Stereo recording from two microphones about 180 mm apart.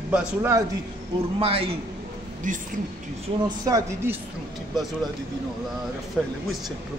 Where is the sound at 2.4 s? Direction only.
45° right (ahead or behind).